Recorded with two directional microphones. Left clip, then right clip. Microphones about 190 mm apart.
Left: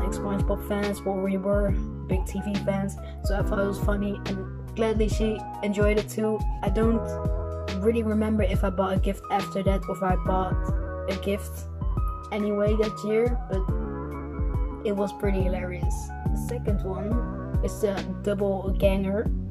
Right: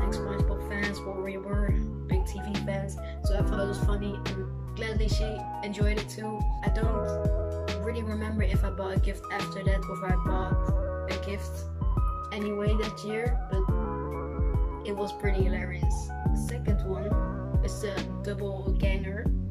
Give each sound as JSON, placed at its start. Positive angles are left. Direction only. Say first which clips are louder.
{"t": 0.0, "sound": "music", "louder": "left 2 dB", "side_deg": 5}
{"t": 0.7, "sound": "speech", "louder": "left 1 dB", "side_deg": 0}
{"t": 14.8, "sound": "speech", "louder": "left 6 dB", "side_deg": 5}
{"t": 16.3, "sound": "music", "louder": "left 5 dB", "side_deg": 0}
{"t": 18.8, "sound": "speech", "louder": "left 10 dB", "side_deg": 15}